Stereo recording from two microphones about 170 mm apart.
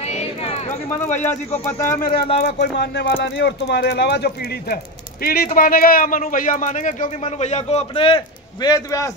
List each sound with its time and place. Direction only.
0.1 s a sound: 40° left (ahead or behind)
0.8 s a man's voice: 10° left (ahead or behind)
2.2 s speech: 40° left (ahead or behind)
2.6 s speech: 80° left
5.2 s speech: 60° left (ahead or behind); by 8.2 s 35° left (ahead or behind)
8.6 s a man's voice: 20° left (ahead or behind)